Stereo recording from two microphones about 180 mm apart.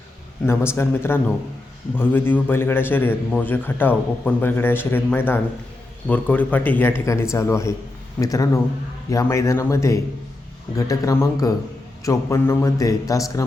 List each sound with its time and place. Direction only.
0.4 s a man's voice: 15° left (ahead or behind)